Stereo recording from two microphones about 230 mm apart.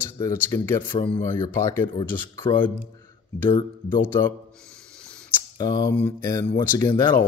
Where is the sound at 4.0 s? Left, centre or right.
Centre.